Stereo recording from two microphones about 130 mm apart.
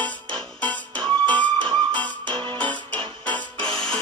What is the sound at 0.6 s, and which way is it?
Music, 10° left (ahead or behind).